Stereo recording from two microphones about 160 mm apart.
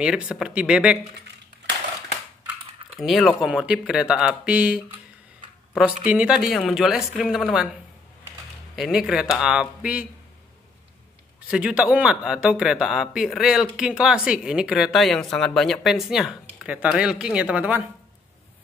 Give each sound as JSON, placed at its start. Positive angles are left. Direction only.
{"t": 0.0, "sound": "a man's voice", "side_deg": -5}
{"t": 3.0, "sound": "a man's voice", "side_deg": 0}
{"t": 6.0, "sound": "a man's voice", "side_deg": -5}
{"t": 8.7, "sound": "a man's voice", "side_deg": 0}
{"t": 11.4, "sound": "a man's voice", "side_deg": -5}